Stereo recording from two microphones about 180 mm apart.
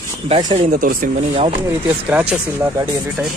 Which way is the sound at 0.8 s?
50° right (ahead or behind).